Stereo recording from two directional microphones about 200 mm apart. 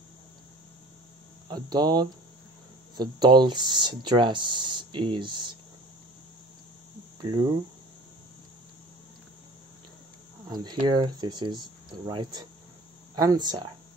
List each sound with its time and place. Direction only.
1.5 s speech: 20° right (ahead or behind)
10.5 s speech: 20° right (ahead or behind)